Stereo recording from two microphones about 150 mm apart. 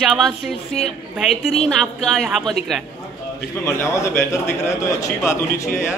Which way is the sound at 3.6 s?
15° left (ahead or behind).